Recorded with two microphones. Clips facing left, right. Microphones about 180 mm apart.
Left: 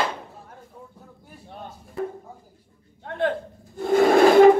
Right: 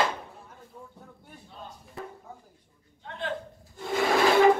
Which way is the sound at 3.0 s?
55° left (ahead or behind).